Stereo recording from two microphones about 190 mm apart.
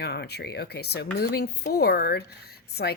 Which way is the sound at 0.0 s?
60° left (ahead or behind).